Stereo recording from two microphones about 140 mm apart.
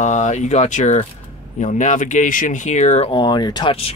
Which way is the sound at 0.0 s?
60° left (ahead or behind).